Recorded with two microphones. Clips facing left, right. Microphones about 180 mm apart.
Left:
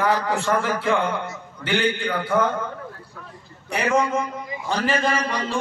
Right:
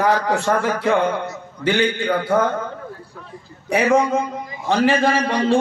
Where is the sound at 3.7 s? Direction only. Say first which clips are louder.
Right 5 dB; 60° right (ahead or behind).